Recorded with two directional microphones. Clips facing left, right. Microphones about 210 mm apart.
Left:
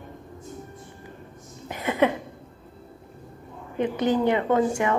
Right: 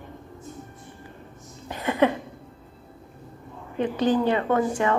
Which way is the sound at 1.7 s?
15° left (ahead or behind).